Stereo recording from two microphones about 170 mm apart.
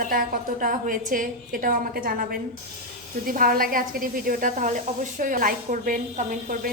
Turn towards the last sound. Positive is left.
turn(degrees=-55)  # may be behind; listen again after turning